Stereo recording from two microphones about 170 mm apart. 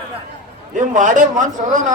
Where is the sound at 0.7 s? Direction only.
50° right (ahead or behind).